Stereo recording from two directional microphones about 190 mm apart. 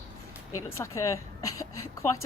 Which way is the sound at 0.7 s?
15° left (ahead or behind).